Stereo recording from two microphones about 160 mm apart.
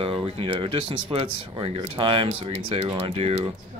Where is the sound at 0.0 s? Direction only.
35° right (ahead or behind).